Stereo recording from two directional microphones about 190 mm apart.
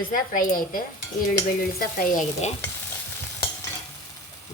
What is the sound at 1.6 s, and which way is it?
Stir, 50° left (ahead or behind).